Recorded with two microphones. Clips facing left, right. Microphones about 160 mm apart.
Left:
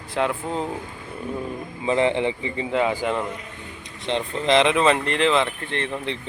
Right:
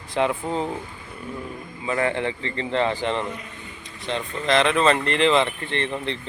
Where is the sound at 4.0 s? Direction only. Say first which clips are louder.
Left 3 dB; 25° left (ahead or behind).